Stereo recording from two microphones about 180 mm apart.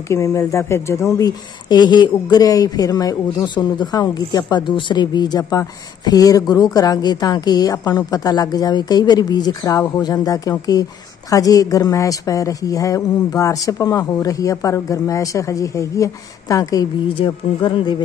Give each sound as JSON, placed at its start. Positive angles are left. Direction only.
{"t": 0.1, "sound": "a woman's voice", "side_deg": 15}